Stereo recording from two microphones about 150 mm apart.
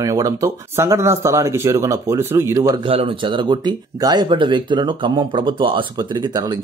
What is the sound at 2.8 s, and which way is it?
Speech, 40° right (ahead or behind).